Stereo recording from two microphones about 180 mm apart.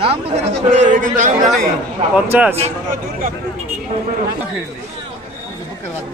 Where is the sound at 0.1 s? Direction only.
35° right (ahead or behind).